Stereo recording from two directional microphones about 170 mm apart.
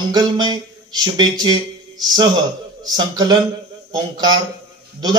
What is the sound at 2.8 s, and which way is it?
A man's voice, 25° right (ahead or behind).